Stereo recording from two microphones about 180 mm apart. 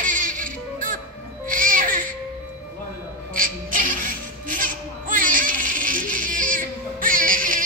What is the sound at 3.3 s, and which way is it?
Music, 50° right (ahead or behind).